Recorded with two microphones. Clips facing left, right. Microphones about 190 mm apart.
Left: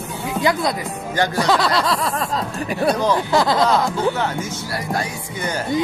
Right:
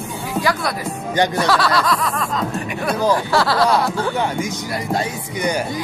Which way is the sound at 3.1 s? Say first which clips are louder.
Even; 20° left (ahead or behind).